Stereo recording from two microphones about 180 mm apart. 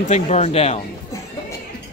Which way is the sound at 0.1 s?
40° left (ahead or behind).